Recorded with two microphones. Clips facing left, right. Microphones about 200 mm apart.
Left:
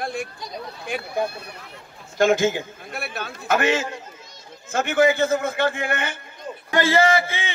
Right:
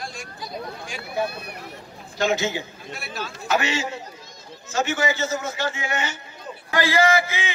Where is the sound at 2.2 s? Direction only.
50° left (ahead or behind).